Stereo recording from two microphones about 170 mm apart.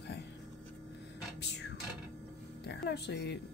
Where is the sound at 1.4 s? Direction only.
80° left.